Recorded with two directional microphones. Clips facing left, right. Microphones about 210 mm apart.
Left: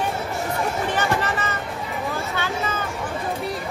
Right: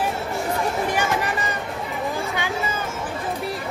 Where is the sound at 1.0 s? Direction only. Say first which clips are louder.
Even; 15° right (ahead or behind).